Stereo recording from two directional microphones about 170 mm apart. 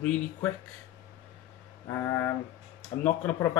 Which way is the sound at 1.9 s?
15° left (ahead or behind).